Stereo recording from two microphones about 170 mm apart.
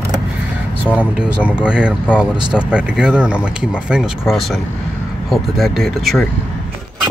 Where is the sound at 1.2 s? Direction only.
10° right (ahead or behind).